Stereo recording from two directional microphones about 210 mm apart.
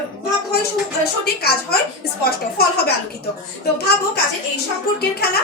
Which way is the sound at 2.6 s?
50° left (ahead or behind).